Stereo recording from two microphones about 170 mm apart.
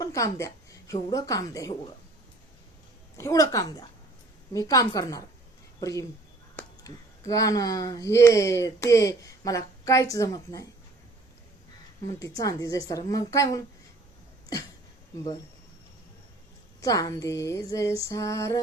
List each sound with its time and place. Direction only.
0.0 s a sound: 20° left (ahead or behind)
1.1 s female singing: 20° left (ahead or behind)
3.2 s female singing: 20° left (ahead or behind)
6.6 s speech: 20° left (ahead or behind)
12.0 s female singing: 20° left (ahead or behind)
16.8 s female singing: 20° left (ahead or behind)